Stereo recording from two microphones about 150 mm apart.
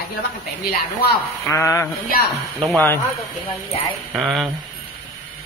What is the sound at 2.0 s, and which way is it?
Speech, 90° left.